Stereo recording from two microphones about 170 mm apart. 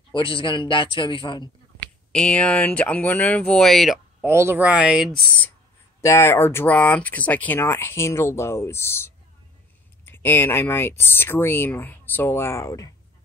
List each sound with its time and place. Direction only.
0.1 s speech: 30° left (ahead or behind)
2.1 s speech: 5° left (ahead or behind)
4.2 s speech: 15° right (ahead or behind)
5.9 s speech: 15° left (ahead or behind)